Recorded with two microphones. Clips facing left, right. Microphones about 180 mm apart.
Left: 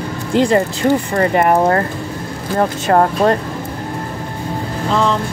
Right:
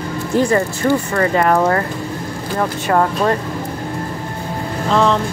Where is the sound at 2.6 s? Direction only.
40° left (ahead or behind).